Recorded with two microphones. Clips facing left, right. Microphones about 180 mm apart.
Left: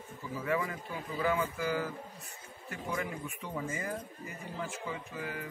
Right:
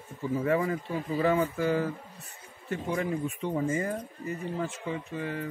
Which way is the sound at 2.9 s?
25° right (ahead or behind).